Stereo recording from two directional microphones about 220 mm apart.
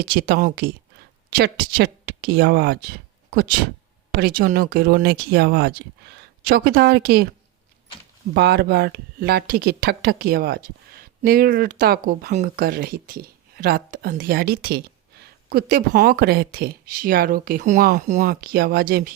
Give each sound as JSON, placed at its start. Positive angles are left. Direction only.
{"t": 0.0, "sound": "speech", "side_deg": -40}
{"t": 8.4, "sound": "speech", "side_deg": -45}